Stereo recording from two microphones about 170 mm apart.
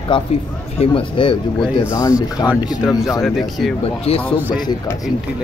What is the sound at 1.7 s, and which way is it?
Speech, 20° left (ahead or behind).